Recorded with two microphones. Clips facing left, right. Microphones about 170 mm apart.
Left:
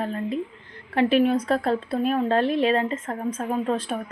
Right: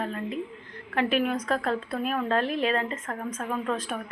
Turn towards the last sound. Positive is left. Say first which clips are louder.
# left 5 dB
turn(degrees=30)  # may be behind; listen again after turning